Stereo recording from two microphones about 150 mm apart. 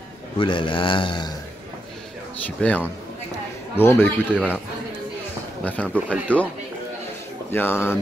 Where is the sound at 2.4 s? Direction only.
10° left (ahead or behind).